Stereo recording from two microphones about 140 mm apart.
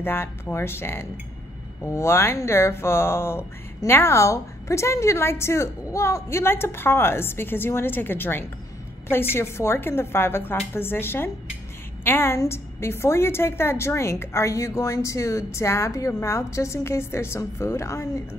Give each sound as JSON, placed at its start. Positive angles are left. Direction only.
{"t": 0.0, "sound": "a woman's voice", "side_deg": 15}